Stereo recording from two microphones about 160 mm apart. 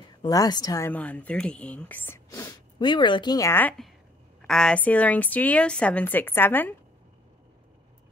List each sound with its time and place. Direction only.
0.2 s a woman's voice: 25° left (ahead or behind)